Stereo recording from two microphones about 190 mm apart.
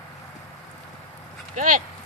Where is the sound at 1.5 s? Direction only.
45° right (ahead or behind).